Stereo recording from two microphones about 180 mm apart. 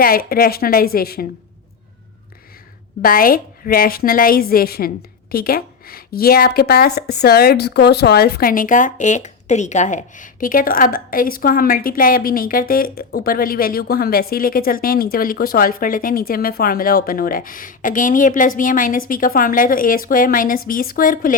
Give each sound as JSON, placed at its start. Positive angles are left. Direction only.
{"t": 0.0, "sound": "a woman's voice", "side_deg": 55}
{"t": 3.0, "sound": "a woman's voice", "side_deg": 50}